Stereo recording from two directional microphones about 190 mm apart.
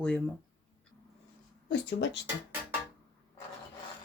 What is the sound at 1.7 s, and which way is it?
Speech, 70° left (ahead or behind).